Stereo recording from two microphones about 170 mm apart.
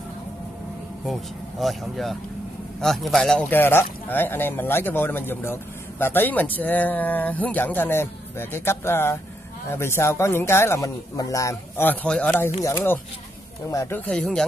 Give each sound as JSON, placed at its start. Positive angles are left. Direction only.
{"t": 1.6, "sound": "speech", "side_deg": 0}